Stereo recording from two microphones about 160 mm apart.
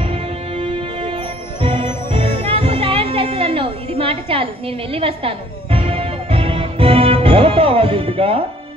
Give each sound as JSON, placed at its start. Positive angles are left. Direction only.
{"t": 0.0, "sound": "music", "side_deg": -35}